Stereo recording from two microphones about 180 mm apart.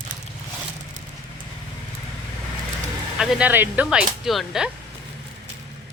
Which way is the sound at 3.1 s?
5° right (ahead or behind).